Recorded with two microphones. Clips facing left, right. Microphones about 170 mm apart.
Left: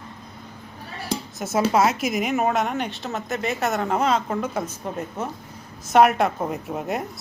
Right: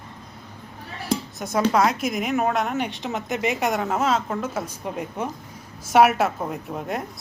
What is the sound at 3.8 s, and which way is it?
A woman's voice, centre (ahead or behind).